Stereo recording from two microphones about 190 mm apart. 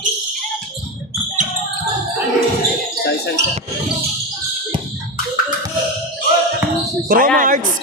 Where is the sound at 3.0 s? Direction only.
65° left (ahead or behind).